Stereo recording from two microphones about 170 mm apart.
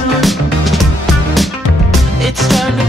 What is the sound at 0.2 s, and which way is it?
Music, centre (ahead or behind).